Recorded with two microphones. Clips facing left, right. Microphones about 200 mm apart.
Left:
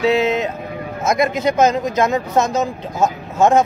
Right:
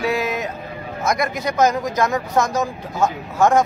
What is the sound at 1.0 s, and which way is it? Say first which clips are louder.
Speech: left 5 dB; 25° left (ahead or behind).